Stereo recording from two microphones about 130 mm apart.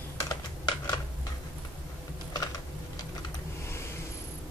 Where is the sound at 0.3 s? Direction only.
30° left (ahead or behind).